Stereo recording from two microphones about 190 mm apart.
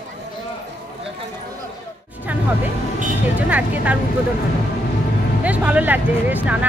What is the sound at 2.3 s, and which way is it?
Music, 10° right (ahead or behind).